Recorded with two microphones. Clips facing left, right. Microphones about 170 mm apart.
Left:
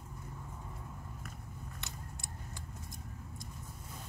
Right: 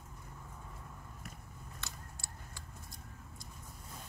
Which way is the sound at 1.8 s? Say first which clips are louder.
Left 2 dB; 20° left (ahead or behind).